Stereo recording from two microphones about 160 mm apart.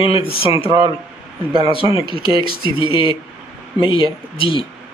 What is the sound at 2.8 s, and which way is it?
Speech, 30° left (ahead or behind).